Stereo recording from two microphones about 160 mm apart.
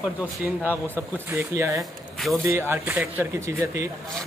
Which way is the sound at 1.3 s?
15° right (ahead or behind).